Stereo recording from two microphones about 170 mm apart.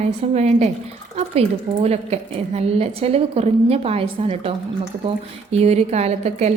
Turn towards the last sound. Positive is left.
turn(degrees=-40)  # may be behind; listen again after turning